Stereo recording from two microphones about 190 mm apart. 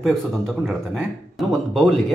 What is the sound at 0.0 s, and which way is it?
Speech, centre (ahead or behind).